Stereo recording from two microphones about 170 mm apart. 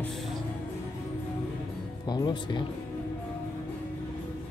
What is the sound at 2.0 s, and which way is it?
Speech, 25° left (ahead or behind).